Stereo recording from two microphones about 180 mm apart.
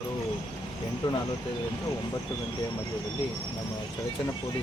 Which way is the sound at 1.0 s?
25° left (ahead or behind).